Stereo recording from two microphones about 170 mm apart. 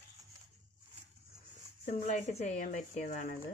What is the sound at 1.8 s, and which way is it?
Speech, 40° left (ahead or behind).